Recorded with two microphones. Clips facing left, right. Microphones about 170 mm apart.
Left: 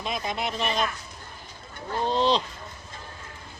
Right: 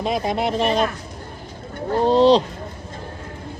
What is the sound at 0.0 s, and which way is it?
Speech, 35° right (ahead or behind).